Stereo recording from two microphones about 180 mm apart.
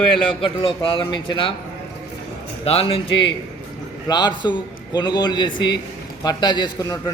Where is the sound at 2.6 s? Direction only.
30° left (ahead or behind).